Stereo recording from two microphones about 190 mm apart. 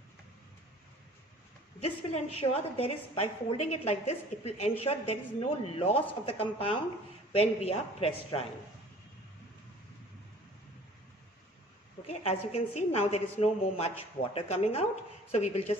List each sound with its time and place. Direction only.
2.3 s a woman's voice: 30° left (ahead or behind)
12.1 s a woman's voice: 35° left (ahead or behind)